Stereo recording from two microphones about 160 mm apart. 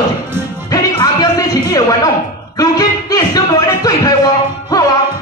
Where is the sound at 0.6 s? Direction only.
25° left (ahead or behind).